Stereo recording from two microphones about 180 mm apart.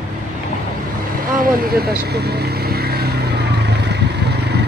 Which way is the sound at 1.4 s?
55° right (ahead or behind).